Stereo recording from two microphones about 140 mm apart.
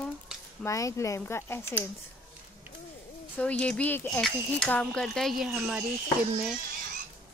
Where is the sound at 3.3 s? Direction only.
10° left (ahead or behind).